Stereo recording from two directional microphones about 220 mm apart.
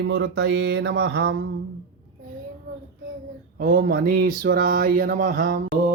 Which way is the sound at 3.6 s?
45° right (ahead or behind).